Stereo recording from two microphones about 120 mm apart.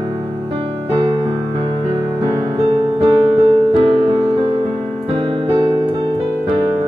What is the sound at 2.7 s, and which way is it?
Music, 50° right (ahead or behind).